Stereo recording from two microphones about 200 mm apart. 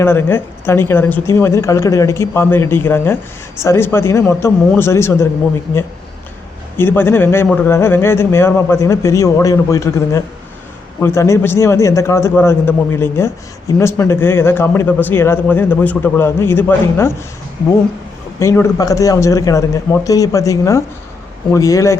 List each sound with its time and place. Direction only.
0.0 s a man's voice: 10° left (ahead or behind)
6.7 s a man's voice: 10° left (ahead or behind)
18.3 s a man's voice: 15° left (ahead or behind)